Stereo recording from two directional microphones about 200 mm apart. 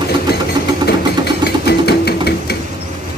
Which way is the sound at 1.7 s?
55° left (ahead or behind).